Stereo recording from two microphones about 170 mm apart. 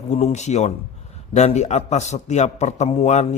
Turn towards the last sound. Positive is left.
turn(degrees=40)  # may be behind; listen again after turning